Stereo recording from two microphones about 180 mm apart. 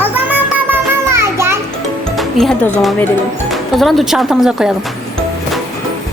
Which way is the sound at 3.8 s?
Centre (ahead or behind).